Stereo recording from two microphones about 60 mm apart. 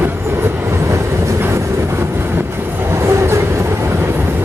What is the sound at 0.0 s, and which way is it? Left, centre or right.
Train, right.